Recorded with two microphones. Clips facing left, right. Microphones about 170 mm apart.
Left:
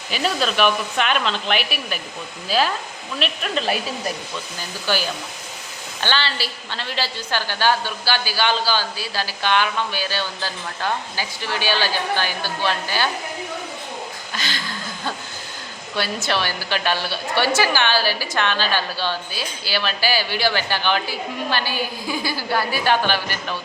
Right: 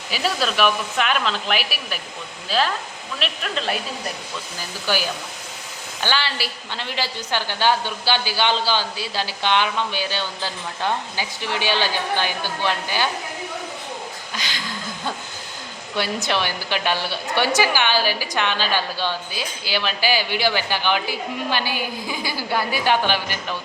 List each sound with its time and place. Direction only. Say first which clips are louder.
0.1 s a woman's voice: left 1 dB; 5° right (ahead or behind)
4.9 s a woman's voice: even; 10° right (ahead or behind)
14.3 s a woman's voice: left 3 dB; 15° right (ahead or behind)
16.0 s a woman's voice: even; 15° right (ahead or behind)